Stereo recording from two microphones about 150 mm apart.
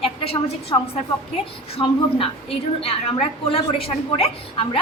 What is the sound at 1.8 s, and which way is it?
A woman's voice, 35° left (ahead or behind).